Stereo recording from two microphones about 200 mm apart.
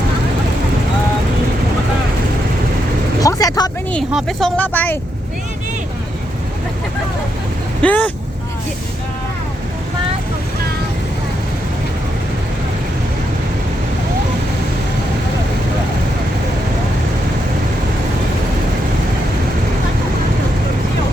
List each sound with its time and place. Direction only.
3.2 s vehicle: 20° left (ahead or behind)
3.9 s speech: centre (ahead or behind)
7.8 s speech: 5° left (ahead or behind)